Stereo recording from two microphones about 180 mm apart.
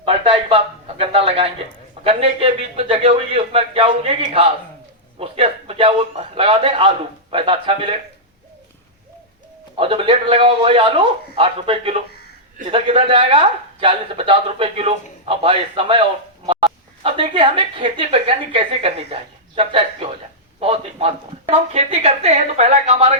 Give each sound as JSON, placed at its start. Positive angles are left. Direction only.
{"t": 0.0, "sound": "a man's voice", "side_deg": -30}
{"t": 5.2, "sound": "a man's voice", "side_deg": -30}
{"t": 9.7, "sound": "a man's voice", "side_deg": -30}